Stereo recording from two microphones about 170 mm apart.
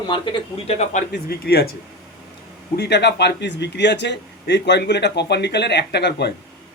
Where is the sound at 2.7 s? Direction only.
75° left (ahead or behind).